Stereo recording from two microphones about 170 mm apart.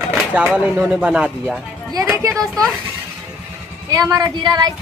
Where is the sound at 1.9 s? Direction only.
15° right (ahead or behind).